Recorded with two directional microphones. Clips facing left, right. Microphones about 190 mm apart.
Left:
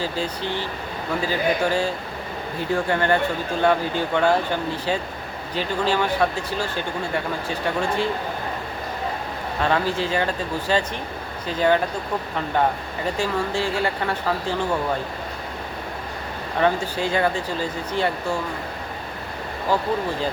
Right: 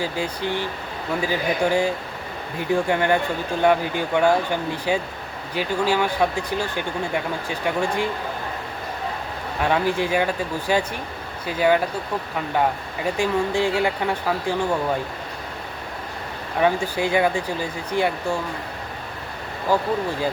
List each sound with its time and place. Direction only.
0.0 s speech: 15° right (ahead or behind)
9.6 s speech: 15° right (ahead or behind)
13.1 s speech: 15° right (ahead or behind)
16.6 s speech: 10° right (ahead or behind)